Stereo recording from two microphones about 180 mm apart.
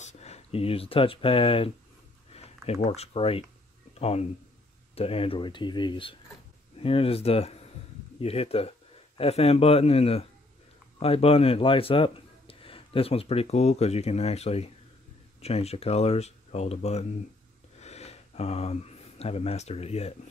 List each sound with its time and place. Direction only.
0.0 s a man's voice: 40° left (ahead or behind)